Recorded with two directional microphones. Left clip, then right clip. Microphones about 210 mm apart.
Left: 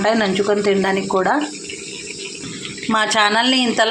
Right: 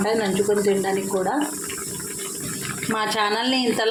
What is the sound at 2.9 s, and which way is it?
Speech, 10° left (ahead or behind).